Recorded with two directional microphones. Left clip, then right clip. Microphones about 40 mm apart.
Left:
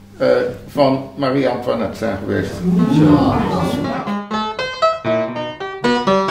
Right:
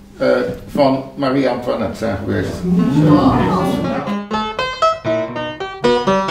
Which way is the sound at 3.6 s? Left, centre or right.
Right.